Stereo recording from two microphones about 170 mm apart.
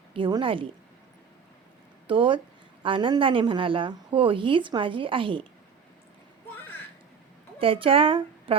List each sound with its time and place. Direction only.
0.1 s a woman's voice: 30° right (ahead or behind)
2.0 s a woman's voice: 30° right (ahead or behind)
7.6 s a woman's voice: 35° right (ahead or behind)